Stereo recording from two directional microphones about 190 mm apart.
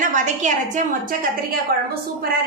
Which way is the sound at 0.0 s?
40° right (ahead or behind).